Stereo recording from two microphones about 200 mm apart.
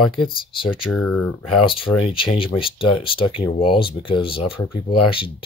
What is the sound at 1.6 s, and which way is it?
Speech, 25° left (ahead or behind).